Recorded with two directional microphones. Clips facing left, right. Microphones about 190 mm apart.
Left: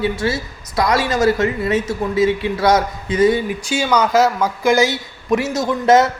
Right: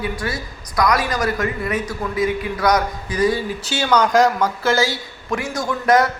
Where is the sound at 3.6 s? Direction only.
10° left (ahead or behind); by 6.1 s 25° left (ahead or behind).